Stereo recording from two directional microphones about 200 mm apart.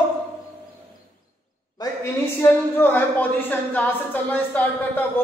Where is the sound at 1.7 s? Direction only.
15° left (ahead or behind).